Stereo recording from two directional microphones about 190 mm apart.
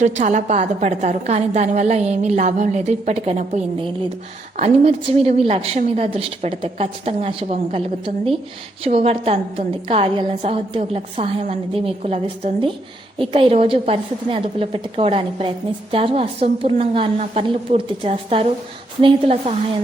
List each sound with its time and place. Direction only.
0.0 s a woman's voice: 40° right (ahead or behind)